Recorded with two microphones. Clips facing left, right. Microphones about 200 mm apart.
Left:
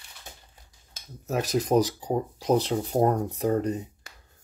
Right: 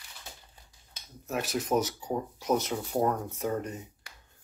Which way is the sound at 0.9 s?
40° left (ahead or behind).